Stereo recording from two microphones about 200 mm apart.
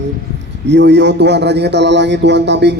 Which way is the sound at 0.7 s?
60° right (ahead or behind).